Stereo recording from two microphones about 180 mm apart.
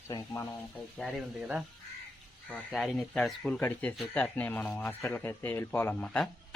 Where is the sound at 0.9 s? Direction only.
5° right (ahead or behind).